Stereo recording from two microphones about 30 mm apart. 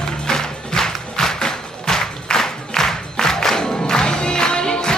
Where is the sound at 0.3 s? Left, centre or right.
Centre.